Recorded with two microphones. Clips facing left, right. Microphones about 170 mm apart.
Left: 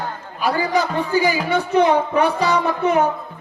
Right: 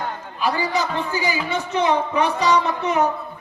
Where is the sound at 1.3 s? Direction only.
60° left (ahead or behind).